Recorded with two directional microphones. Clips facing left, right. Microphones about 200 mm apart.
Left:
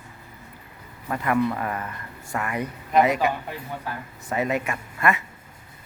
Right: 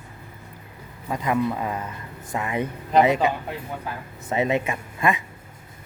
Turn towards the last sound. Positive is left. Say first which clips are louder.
# right 1 dB
turn(degrees=-15)  # may be behind; listen again after turning